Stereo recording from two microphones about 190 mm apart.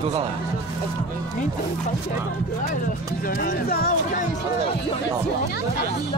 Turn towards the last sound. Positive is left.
turn(degrees=50)  # may be behind; listen again after turning